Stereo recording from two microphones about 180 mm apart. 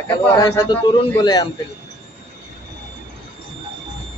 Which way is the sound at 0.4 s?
20° left (ahead or behind).